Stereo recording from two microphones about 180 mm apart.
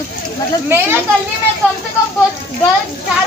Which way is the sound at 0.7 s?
10° right (ahead or behind).